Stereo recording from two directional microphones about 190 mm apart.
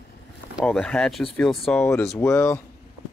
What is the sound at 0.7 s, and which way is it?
Speech, 5° left (ahead or behind).